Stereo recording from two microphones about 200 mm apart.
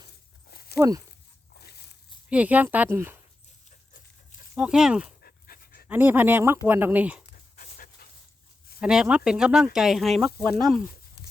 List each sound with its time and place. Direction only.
0.5 s walk: 50° left (ahead or behind)
0.8 s speech: 20° right (ahead or behind)
2.3 s speech: 5° right (ahead or behind)
4.5 s speech: 5° right (ahead or behind)
5.2 s dog: 50° left (ahead or behind)
5.9 s speech: 10° right (ahead or behind)
7.3 s dog: 45° left (ahead or behind)
8.8 s speech: 5° right (ahead or behind)